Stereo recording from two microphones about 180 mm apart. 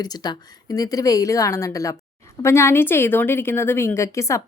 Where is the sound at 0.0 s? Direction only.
20° left (ahead or behind).